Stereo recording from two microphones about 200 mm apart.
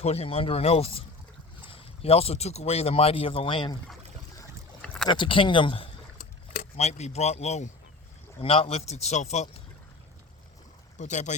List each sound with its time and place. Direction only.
0.0 s speech: 30° left (ahead or behind)
5.0 s speech: 25° left (ahead or behind)
6.1 s boat: 40° left (ahead or behind)
8.4 s speech: 30° left (ahead or behind)
10.9 s speech: 35° left (ahead or behind)